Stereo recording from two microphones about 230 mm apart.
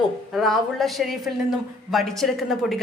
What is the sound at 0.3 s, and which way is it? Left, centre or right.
A woman's voice, centre.